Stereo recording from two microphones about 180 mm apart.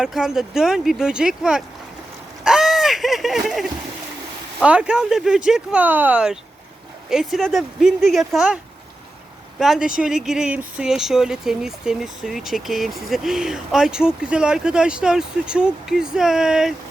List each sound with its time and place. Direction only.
0.0 s speech: 5° right (ahead or behind)
2.4 s a sound: 5° right (ahead or behind)
4.6 s speech: 5° right (ahead or behind)
9.6 s speech: centre (ahead or behind)